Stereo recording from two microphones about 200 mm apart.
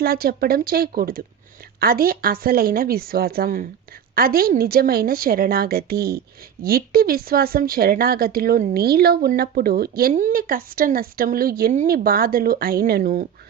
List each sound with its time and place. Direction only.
0.0 s a woman's voice: 50° right (ahead or behind)